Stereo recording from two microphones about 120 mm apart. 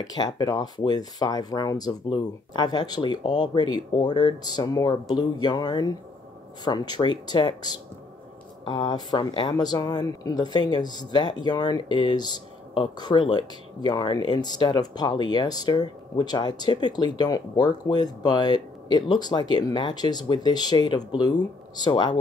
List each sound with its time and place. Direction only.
0.0 s speech: 35° left (ahead or behind)